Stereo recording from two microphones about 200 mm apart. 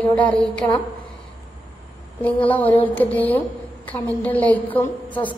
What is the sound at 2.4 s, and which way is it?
A woman's voice, 10° left (ahead or behind).